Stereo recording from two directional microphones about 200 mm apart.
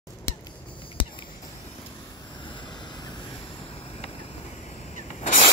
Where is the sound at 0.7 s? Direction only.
25° left (ahead or behind).